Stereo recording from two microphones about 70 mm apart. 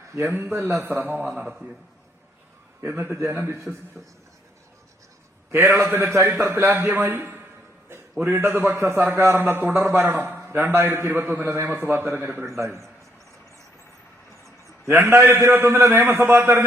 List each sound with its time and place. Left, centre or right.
0.5 s a man's voice: right
1.5 s a man's voice: centre
2.8 s a man's voice: right
5.5 s a man's voice: right
6.7 s a man's voice: right
9.9 s a man's voice: right
12.5 s a man's voice: right
14.8 s a man's voice: right